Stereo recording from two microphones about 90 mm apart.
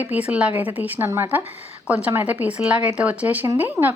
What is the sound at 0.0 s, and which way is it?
A woman's voice, 15° right (ahead or behind).